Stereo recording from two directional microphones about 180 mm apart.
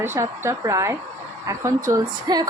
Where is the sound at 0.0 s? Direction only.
15° right (ahead or behind).